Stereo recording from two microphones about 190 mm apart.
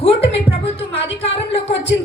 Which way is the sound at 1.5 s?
30° left (ahead or behind).